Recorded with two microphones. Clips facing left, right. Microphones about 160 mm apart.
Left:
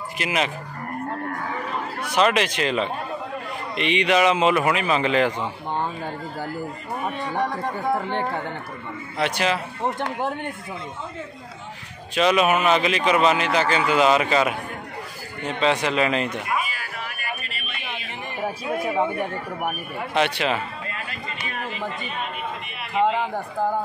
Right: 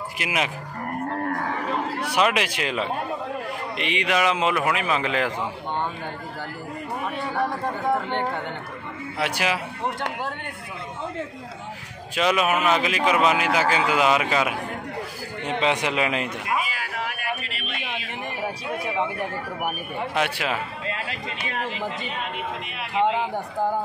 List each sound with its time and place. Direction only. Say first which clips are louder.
0.2 s speech: left 2 dB; 10° right (ahead or behind)
2.0 s speech: left 3 dB; 10° right (ahead or behind)
7.9 s speech: even; 5° left (ahead or behind)
9.2 s speech: left 2 dB; 10° right (ahead or behind)
12.2 s speech: left 3 dB; 5° right (ahead or behind)
15.6 s speech: left 3 dB; 15° right (ahead or behind)
16.6 s a sound: right 3 dB; 90° right
18.9 s speech: left 3 dB; centre (ahead or behind)
20.8 s a man's voice: right 3 dB; 90° right